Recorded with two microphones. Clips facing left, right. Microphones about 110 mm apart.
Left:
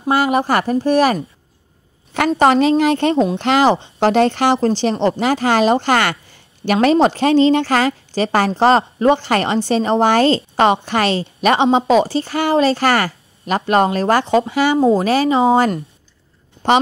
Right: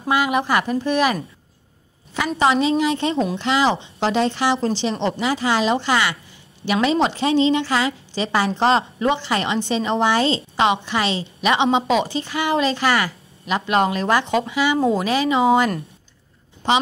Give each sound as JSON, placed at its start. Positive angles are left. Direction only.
{"t": 0.1, "sound": "speech", "side_deg": 40}
{"t": 2.1, "sound": "a woman's voice", "side_deg": 55}
{"t": 16.6, "sound": "a woman's voice", "side_deg": 50}